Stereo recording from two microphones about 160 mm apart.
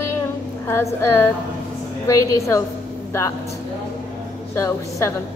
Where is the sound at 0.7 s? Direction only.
15° left (ahead or behind).